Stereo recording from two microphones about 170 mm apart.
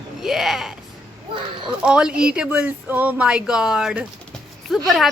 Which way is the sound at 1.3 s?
30° right (ahead or behind).